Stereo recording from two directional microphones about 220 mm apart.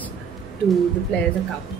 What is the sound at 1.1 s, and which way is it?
Speech, 5° left (ahead or behind).